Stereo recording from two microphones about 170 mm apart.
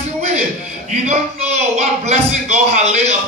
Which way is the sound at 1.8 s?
40° right (ahead or behind).